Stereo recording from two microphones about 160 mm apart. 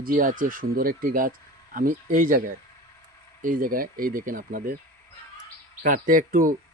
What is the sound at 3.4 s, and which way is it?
Speech, 60° right (ahead or behind).